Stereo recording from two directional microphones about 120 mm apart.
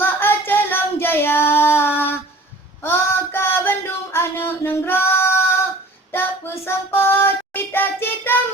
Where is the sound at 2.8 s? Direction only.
20° left (ahead or behind).